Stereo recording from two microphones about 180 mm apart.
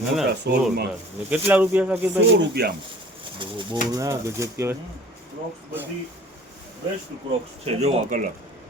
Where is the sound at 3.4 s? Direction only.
25° right (ahead or behind).